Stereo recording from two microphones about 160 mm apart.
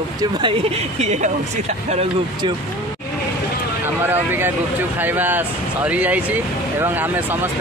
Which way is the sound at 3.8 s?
15° right (ahead or behind).